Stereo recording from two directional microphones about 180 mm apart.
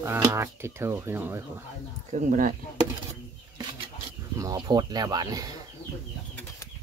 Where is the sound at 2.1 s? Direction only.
45° right (ahead or behind).